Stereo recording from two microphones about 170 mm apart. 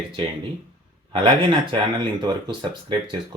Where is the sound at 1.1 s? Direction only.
30° right (ahead or behind).